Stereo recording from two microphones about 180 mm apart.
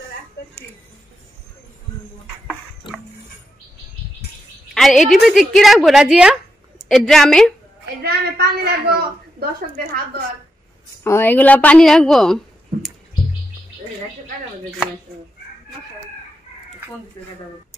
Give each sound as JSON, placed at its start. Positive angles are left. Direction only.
{"t": 2.8, "sound": "music", "side_deg": 25}
{"t": 4.7, "sound": "a woman's voice", "side_deg": 0}
{"t": 8.0, "sound": "a sound", "side_deg": -60}
{"t": 11.1, "sound": "a woman's voice", "side_deg": 10}